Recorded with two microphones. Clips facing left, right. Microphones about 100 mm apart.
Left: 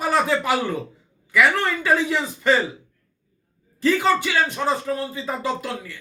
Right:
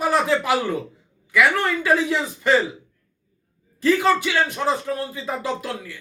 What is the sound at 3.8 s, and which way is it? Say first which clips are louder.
A man's voice: right 1 dB; centre (ahead or behind).